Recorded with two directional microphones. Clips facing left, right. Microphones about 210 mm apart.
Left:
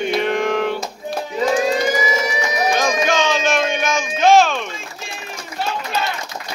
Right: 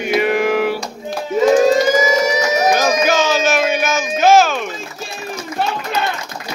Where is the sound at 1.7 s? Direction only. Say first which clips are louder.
Right 5 dB; 40° right (ahead or behind).